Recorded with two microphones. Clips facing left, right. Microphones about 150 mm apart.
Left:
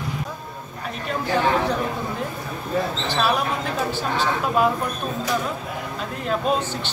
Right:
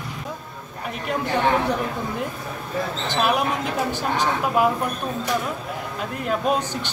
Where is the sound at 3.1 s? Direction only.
15° right (ahead or behind).